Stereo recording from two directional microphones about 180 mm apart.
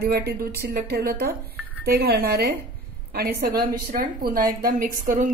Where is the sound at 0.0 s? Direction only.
60° right (ahead or behind).